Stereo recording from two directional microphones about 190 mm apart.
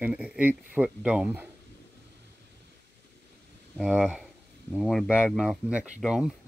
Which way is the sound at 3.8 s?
5° right (ahead or behind).